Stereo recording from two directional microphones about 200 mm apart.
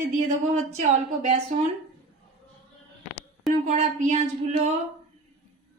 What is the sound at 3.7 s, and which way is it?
A woman's voice, 40° right (ahead or behind).